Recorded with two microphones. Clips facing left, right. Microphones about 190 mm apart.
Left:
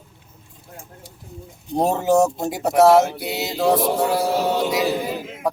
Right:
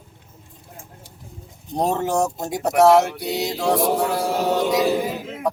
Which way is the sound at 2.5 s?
5° left (ahead or behind).